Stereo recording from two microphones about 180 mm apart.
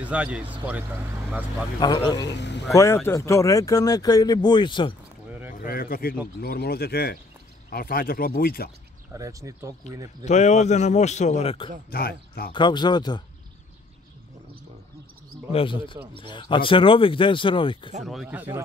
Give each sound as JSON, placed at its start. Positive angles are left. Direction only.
{"t": 0.0, "sound": "speech", "side_deg": -5}
{"t": 1.8, "sound": "speech", "side_deg": 25}
{"t": 2.2, "sound": "speech", "side_deg": 75}
{"t": 2.7, "sound": "speech", "side_deg": 15}
{"t": 5.5, "sound": "a man's voice", "side_deg": 55}
{"t": 9.1, "sound": "speech", "side_deg": -15}
{"t": 10.2, "sound": "a man's voice", "side_deg": 40}
{"t": 11.9, "sound": "speech", "side_deg": 55}
{"t": 12.5, "sound": "speech", "side_deg": 25}
{"t": 15.5, "sound": "speech", "side_deg": 30}
{"t": 18.0, "sound": "speech", "side_deg": -5}